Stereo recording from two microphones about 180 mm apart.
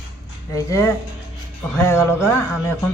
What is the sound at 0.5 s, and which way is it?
A woman's voice, 15° left (ahead or behind).